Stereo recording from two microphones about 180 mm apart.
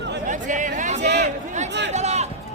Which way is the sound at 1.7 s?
75° right (ahead or behind).